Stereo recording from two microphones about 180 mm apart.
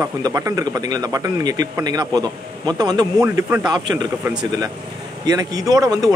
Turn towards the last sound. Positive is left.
turn(degrees=-20)  # may be behind; listen again after turning